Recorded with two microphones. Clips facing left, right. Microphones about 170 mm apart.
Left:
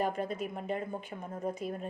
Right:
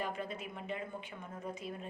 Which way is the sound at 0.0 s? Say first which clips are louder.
Left 7 dB; 45° left (ahead or behind).